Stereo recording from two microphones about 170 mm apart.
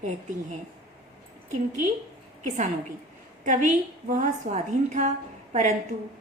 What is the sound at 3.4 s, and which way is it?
A woman's voice, 45° right (ahead or behind).